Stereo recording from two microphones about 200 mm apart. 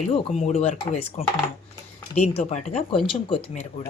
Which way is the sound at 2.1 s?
35° left (ahead or behind).